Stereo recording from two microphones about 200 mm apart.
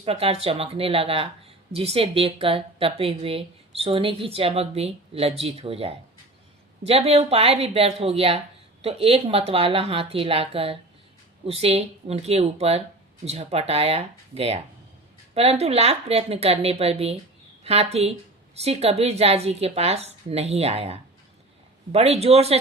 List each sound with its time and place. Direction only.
0.0 s a woman's voice: 30° right (ahead or behind)